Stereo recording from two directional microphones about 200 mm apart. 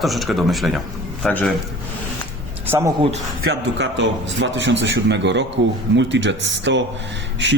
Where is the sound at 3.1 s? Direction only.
70° right (ahead or behind).